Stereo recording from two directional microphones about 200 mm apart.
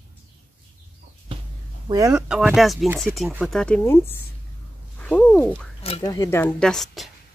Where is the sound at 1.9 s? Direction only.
15° right (ahead or behind).